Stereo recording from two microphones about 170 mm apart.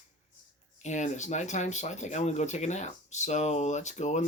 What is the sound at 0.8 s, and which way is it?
Speech, 45° left (ahead or behind).